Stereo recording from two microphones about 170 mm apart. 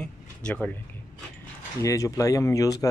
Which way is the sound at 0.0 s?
5° left (ahead or behind).